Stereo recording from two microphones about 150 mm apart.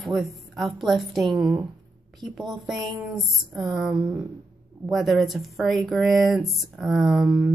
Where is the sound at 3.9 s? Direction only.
20° right (ahead or behind).